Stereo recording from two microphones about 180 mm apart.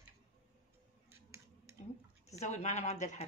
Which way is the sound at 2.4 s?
40° left (ahead or behind).